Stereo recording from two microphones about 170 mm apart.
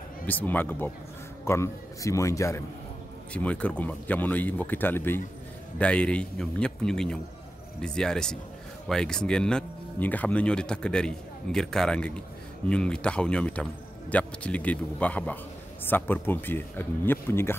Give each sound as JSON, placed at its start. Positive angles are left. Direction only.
{"t": 0.3, "sound": "speech", "side_deg": 10}